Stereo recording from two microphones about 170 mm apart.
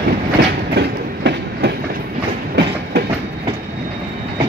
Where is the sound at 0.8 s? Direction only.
80° right.